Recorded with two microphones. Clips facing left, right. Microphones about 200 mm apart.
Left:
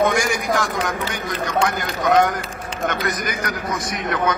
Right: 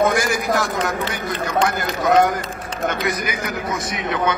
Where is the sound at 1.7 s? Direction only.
5° right (ahead or behind).